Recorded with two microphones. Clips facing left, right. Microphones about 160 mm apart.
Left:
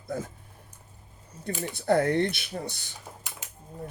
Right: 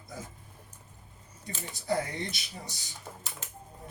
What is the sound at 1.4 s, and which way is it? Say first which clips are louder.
Speech: left 7 dB; 60° left (ahead or behind).